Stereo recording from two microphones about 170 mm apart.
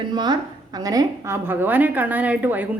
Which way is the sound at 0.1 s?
25° right (ahead or behind).